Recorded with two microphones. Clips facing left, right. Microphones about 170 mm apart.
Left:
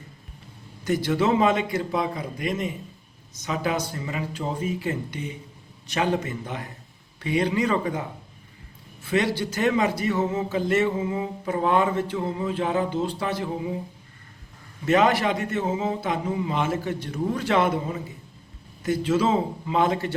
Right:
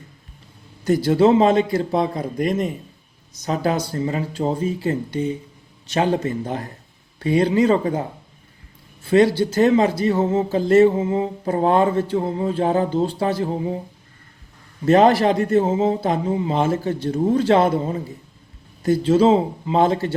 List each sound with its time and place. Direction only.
0.9 s speech: 35° right (ahead or behind)
9.0 s speech: 35° right (ahead or behind)
14.8 s speech: 35° right (ahead or behind)